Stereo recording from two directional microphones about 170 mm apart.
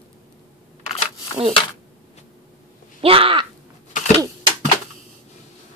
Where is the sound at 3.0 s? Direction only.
35° right (ahead or behind).